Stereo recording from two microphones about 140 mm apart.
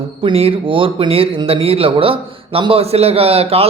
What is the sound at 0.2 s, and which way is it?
Speech, 40° right (ahead or behind).